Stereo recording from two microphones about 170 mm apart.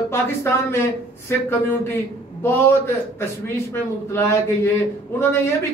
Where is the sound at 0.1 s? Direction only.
15° left (ahead or behind).